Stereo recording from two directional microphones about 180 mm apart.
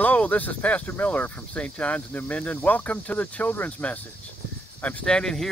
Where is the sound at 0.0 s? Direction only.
10° left (ahead or behind).